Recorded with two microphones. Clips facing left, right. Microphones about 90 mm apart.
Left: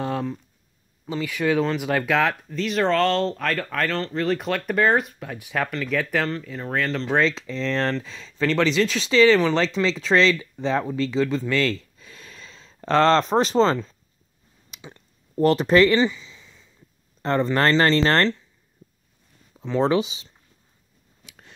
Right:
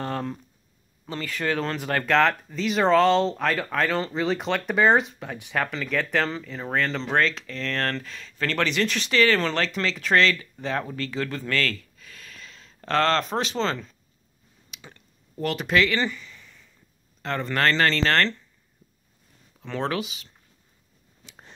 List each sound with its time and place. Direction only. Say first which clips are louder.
0.0 s a sound: left 3 dB; 5° left (ahead or behind)
1.0 s speech: left 4 dB; 10° left (ahead or behind)
7.7 s speech: left 3 dB; 15° left (ahead or behind)
8.1 s speech: left 5 dB; centre (ahead or behind); by 13.9 s 30° left (ahead or behind)
15.3 s speech: left 7 dB; 35° left (ahead or behind)
16.2 s a sound: even; 15° left (ahead or behind)
17.2 s speech: left 4 dB; 30° left (ahead or behind)
19.8 s speech: left 7 dB; 25° left (ahead or behind)